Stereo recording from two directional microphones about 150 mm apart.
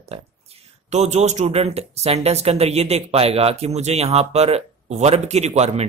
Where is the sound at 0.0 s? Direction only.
45° right (ahead or behind).